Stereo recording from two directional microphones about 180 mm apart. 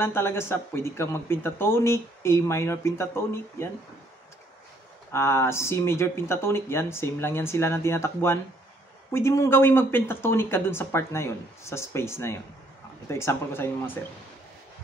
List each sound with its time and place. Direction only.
0.0 s speech: 15° left (ahead or behind)
5.1 s speech: 15° left (ahead or behind)